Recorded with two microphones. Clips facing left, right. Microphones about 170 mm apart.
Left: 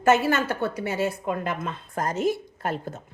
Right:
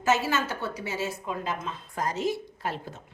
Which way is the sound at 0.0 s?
55° left (ahead or behind).